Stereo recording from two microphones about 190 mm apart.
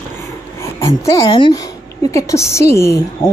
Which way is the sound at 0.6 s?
15° left (ahead or behind).